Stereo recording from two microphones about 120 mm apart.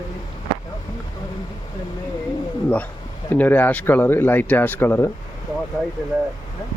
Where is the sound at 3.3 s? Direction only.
15° left (ahead or behind).